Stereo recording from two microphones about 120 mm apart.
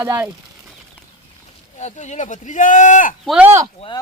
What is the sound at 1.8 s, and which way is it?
Speech, 70° left (ahead or behind).